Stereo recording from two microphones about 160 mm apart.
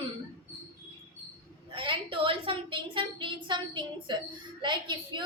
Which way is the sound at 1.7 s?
30° right (ahead or behind).